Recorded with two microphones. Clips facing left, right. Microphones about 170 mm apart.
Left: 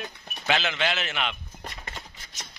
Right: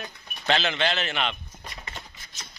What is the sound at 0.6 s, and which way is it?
Speech, 5° left (ahead or behind).